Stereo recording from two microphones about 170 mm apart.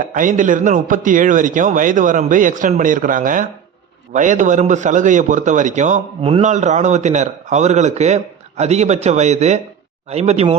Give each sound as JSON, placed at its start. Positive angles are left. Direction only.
{"t": 0.0, "sound": "a man's voice", "side_deg": -50}